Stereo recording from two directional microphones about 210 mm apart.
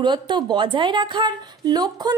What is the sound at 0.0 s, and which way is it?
Speech, 20° right (ahead or behind).